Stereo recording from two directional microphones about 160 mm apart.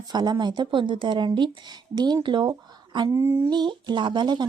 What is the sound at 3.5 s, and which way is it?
Speech, 25° right (ahead or behind).